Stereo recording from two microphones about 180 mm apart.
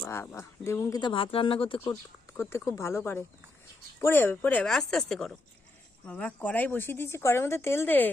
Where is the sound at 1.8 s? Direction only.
15° left (ahead or behind).